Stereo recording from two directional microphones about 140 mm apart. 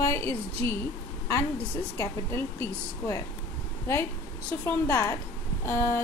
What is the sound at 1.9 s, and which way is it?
Speech, 20° left (ahead or behind).